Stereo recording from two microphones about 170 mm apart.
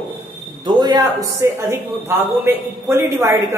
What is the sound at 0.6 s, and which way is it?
A man's voice, 25° right (ahead or behind).